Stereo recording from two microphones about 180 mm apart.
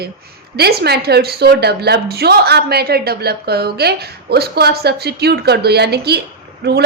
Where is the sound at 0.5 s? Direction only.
60° right (ahead or behind).